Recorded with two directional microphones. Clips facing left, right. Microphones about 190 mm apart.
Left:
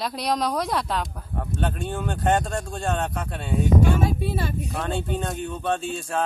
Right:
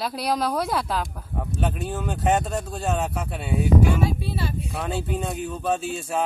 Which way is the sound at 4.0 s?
50° left (ahead or behind).